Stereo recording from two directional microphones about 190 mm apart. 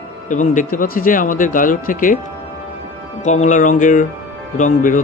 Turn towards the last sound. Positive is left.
turn(degrees=45)  # may be behind; listen again after turning